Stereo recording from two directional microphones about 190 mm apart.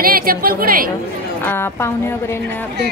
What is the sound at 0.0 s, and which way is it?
Speech, 50° right (ahead or behind).